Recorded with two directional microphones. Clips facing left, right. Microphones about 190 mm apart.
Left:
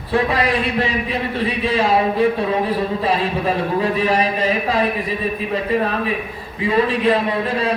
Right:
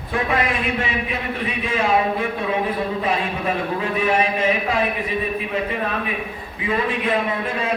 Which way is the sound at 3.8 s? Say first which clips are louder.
Left 1 dB; 35° left (ahead or behind).